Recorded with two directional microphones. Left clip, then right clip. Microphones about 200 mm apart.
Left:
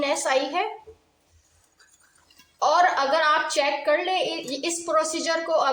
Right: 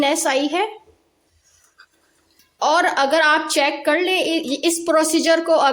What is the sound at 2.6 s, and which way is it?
A woman's voice, 50° right (ahead or behind).